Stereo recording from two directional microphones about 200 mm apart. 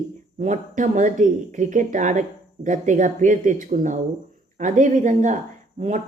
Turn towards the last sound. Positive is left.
turn(degrees=-35)  # may be behind; listen again after turning